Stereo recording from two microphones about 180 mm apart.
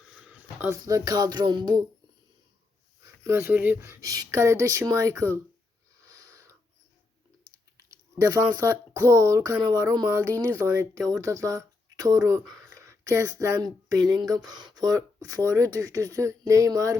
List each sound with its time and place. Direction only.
0.0 s speech: 5° right (ahead or behind); by 1.8 s 25° right (ahead or behind)
3.0 s speech: 15° right (ahead or behind)
6.1 s a sound: 20° right (ahead or behind)
7.8 s speech: 20° right (ahead or behind)